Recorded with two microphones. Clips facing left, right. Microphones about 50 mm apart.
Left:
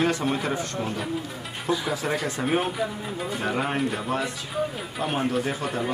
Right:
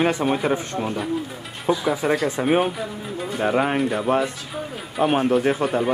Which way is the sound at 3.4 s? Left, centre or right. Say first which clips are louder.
Right 8 dB; centre.